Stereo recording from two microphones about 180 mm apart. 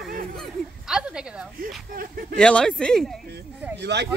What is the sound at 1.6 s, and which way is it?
Speech, 50° right (ahead or behind).